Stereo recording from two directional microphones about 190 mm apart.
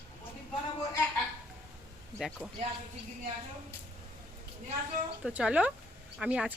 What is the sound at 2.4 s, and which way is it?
Speech, 5° right (ahead or behind).